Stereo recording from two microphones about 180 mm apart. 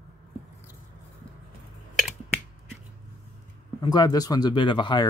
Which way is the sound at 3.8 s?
25° left (ahead or behind).